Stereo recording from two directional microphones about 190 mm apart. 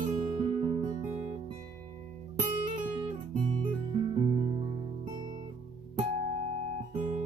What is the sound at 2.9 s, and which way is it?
Guitar, 25° right (ahead or behind).